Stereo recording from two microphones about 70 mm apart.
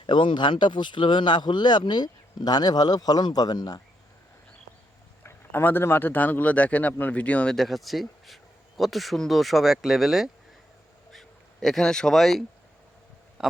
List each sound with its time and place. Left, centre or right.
0.3 s speech: left
5.2 s a man's voice: left
7.5 s speech: centre